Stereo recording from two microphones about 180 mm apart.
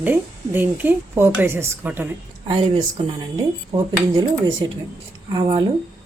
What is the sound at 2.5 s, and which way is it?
Speech, 30° right (ahead or behind).